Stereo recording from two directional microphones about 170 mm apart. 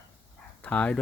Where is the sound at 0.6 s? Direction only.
5° left (ahead or behind).